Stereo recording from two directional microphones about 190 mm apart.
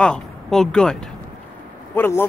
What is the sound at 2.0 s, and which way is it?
Speech, 10° left (ahead or behind).